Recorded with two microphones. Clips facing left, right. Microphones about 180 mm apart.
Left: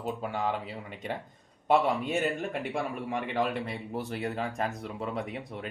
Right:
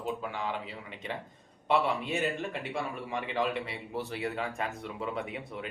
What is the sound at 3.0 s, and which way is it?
Speech, 55° left (ahead or behind).